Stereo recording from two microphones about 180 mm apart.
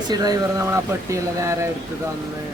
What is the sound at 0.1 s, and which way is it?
Speech, 20° right (ahead or behind).